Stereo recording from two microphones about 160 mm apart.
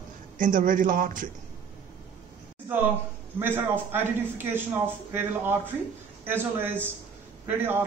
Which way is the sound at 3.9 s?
10° right (ahead or behind).